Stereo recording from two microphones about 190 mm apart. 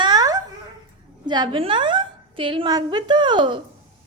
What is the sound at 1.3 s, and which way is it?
A woman's voice, 25° right (ahead or behind).